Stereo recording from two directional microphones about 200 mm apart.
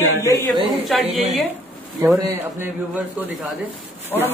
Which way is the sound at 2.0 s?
15° right (ahead or behind).